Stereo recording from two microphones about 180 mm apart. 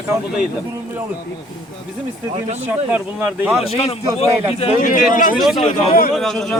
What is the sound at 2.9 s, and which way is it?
Speech, 10° right (ahead or behind).